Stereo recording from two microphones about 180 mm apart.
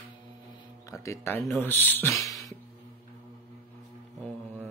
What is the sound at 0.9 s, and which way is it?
Speech, 15° left (ahead or behind).